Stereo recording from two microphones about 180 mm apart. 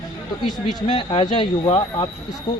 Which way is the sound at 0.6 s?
25° left (ahead or behind).